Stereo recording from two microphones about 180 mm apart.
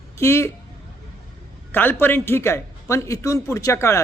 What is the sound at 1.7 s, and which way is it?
A man's voice, 10° left (ahead or behind).